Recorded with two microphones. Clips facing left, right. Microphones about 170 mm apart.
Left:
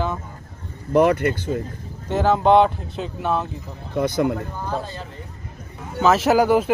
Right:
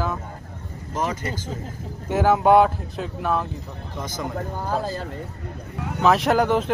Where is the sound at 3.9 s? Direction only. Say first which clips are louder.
Left 11 dB; 60° left (ahead or behind).